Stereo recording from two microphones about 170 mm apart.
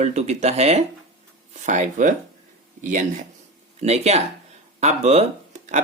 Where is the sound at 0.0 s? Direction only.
40° right (ahead or behind).